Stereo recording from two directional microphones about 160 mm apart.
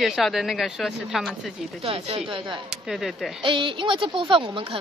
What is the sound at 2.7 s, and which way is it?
Speech, centre (ahead or behind).